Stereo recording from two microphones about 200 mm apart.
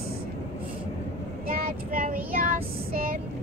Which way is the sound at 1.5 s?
45° right (ahead or behind).